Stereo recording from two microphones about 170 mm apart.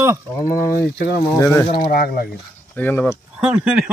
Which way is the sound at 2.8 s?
10° left (ahead or behind).